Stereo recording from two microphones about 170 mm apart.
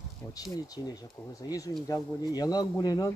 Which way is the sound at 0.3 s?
20° left (ahead or behind).